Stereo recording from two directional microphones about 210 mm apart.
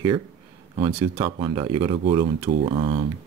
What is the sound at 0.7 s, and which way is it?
Speech, 25° right (ahead or behind).